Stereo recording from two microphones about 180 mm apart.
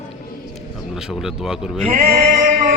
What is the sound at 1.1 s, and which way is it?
Speech, 5° right (ahead or behind).